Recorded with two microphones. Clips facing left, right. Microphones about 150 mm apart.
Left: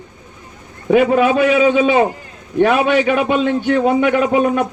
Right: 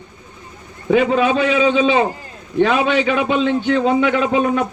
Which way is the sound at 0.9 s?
10° left (ahead or behind).